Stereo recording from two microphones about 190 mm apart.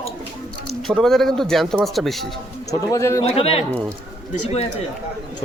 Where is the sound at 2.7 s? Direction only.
15° left (ahead or behind).